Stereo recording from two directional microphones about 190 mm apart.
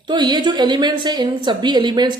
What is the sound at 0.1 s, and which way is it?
A woman's voice, 25° right (ahead or behind).